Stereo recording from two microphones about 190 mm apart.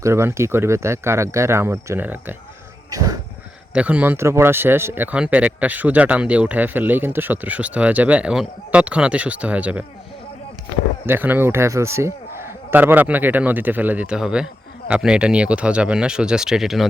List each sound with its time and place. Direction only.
0.0 s speech: 15° right (ahead or behind)
2.9 s a sound: 15° right (ahead or behind)
3.8 s speech: 5° right (ahead or behind)
11.0 s speech: 10° right (ahead or behind)